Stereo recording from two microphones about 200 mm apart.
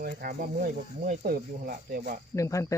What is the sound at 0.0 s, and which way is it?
Speech, 50° right (ahead or behind).